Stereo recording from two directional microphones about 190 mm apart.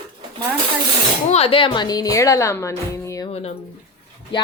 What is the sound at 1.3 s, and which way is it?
A woman's voice, 35° left (ahead or behind).